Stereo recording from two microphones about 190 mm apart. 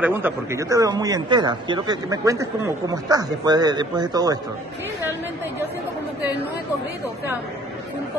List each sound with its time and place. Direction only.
0.0 s speech: 10° right (ahead or behind)